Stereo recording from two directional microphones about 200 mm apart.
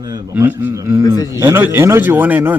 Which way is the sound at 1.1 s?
20° left (ahead or behind).